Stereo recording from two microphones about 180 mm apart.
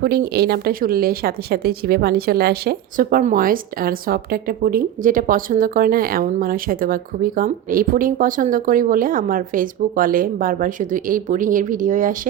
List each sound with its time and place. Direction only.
0.0 s speech: 60° right (ahead or behind)